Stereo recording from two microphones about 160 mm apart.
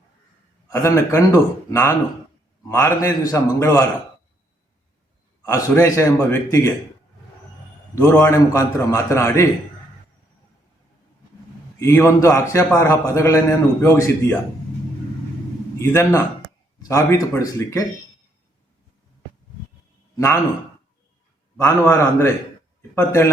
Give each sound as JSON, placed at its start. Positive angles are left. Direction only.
{"t": 0.7, "sound": "a man's voice", "side_deg": 15}
{"t": 5.4, "sound": "a man's voice", "side_deg": 15}
{"t": 8.1, "sound": "a man's voice", "side_deg": 15}
{"t": 11.8, "sound": "a man's voice", "side_deg": 15}
{"t": 15.8, "sound": "a man's voice", "side_deg": 15}
{"t": 20.1, "sound": "a man's voice", "side_deg": 20}
{"t": 21.6, "sound": "a man's voice", "side_deg": 15}